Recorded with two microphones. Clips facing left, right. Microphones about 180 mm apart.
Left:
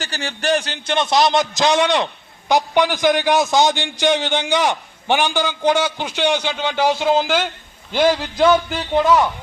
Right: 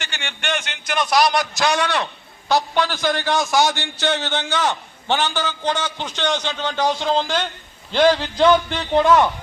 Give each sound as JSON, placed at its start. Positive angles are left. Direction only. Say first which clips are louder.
{"t": 0.0, "sound": "a man's voice", "louder": "left 6 dB", "side_deg": 35}